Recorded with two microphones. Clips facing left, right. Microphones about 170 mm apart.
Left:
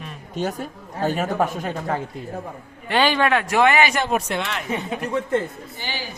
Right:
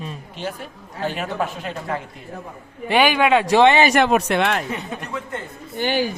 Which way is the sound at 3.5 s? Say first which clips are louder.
Right 3 dB; 25° right (ahead or behind).